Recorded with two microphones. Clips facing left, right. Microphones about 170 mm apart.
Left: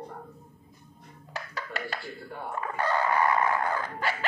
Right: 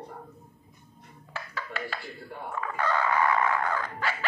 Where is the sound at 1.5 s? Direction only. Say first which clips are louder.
Even; 40° left (ahead or behind).